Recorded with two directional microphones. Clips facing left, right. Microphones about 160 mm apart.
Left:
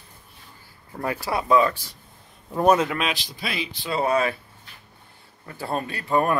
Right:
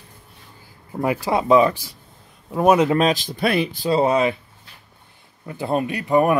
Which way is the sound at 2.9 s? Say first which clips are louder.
Right 9 dB; 40° right (ahead or behind).